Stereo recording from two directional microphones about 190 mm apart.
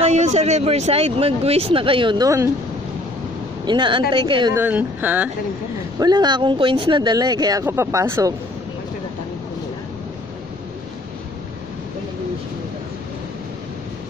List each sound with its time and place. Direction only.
0.0 s speech: 35° right (ahead or behind); by 2.5 s 15° right (ahead or behind)
3.6 s speech: 25° right (ahead or behind)
4.6 s speech: 10° right (ahead or behind)
5.9 s speech: 20° right (ahead or behind)